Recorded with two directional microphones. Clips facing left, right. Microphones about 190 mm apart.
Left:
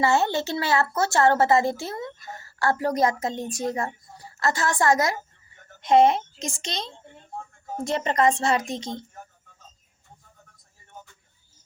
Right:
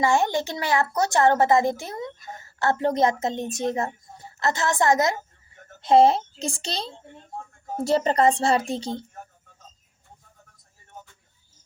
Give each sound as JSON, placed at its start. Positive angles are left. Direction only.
{"t": 0.0, "sound": "a woman's voice", "side_deg": -15}